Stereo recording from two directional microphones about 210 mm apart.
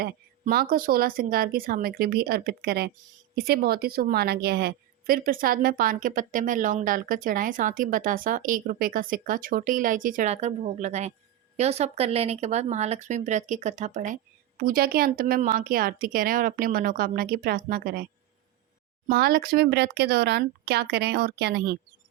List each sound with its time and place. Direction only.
0.0 s a woman's voice: 45° right (ahead or behind)
19.0 s speech: 45° right (ahead or behind)